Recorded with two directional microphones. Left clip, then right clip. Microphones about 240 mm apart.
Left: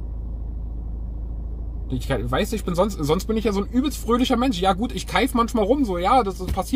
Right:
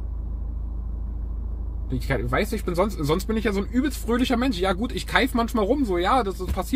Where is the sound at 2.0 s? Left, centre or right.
Left.